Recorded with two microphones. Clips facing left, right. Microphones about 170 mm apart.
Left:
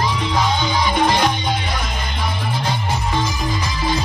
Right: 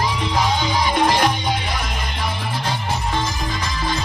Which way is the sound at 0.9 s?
5° right (ahead or behind).